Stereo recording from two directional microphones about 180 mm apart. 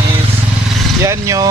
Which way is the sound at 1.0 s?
15° right (ahead or behind).